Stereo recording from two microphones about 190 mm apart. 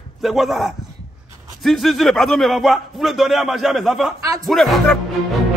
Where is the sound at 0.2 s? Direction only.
Centre (ahead or behind).